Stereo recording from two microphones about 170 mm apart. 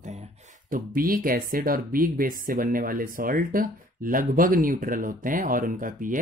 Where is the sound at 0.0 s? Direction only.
45° right (ahead or behind).